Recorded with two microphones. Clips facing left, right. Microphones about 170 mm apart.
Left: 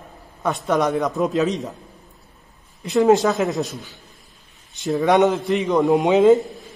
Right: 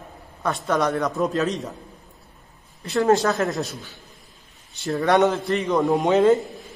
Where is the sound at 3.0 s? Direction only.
Centre (ahead or behind).